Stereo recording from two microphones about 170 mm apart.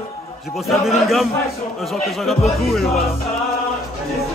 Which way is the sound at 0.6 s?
Centre (ahead or behind).